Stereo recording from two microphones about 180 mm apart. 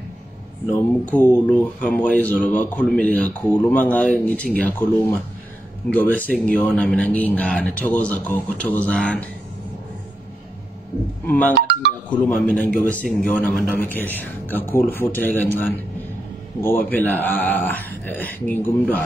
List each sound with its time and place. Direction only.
1.1 s speech: 10° left (ahead or behind)
11.2 s speech: 10° left (ahead or behind)
11.5 s music: 65° right (ahead or behind)
12.1 s speech: 10° left (ahead or behind)
16.6 s speech: 10° left (ahead or behind)